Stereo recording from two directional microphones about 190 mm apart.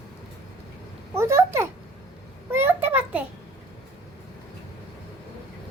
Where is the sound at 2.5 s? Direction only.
10° right (ahead or behind).